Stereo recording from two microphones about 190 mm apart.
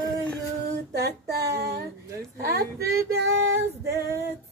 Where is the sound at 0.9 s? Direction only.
55° right (ahead or behind).